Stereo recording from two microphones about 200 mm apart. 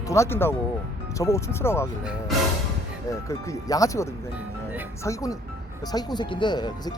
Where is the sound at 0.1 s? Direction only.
15° left (ahead or behind).